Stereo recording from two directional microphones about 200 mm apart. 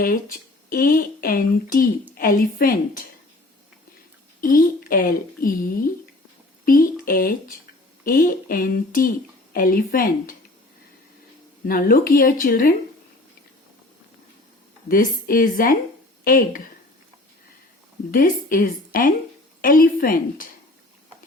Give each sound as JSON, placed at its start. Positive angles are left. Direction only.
{"t": 0.0, "sound": "speech", "side_deg": 45}
{"t": 4.4, "sound": "speech", "side_deg": 45}
{"t": 11.6, "sound": "speech", "side_deg": 45}
{"t": 14.8, "sound": "speech", "side_deg": 45}
{"t": 18.1, "sound": "speech", "side_deg": 45}